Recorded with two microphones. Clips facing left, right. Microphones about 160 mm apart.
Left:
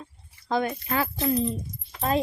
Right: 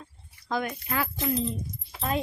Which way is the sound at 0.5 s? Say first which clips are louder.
Left 4 dB; 25° left (ahead or behind).